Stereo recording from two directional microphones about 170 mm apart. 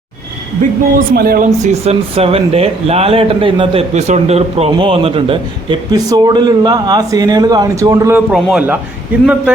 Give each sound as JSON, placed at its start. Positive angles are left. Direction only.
{"t": 0.9, "sound": "speech", "side_deg": -65}
{"t": 1.6, "sound": "speech", "side_deg": -40}
{"t": 8.3, "sound": "a man's voice", "side_deg": -5}